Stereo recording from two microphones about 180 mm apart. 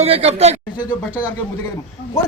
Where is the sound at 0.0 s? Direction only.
35° right (ahead or behind).